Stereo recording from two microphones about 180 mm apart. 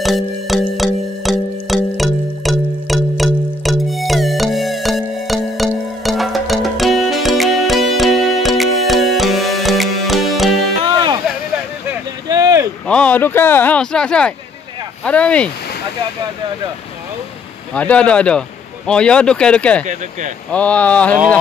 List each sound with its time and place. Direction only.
0.0 s music: centre (ahead or behind)
12.3 s a sound: 20° right (ahead or behind)
12.8 s a sound: 5° left (ahead or behind)
15.0 s speech: 5° left (ahead or behind)
17.7 s speech: 5° left (ahead or behind)
19.9 s speech: 45° right (ahead or behind)
20.5 s speech: 5° left (ahead or behind)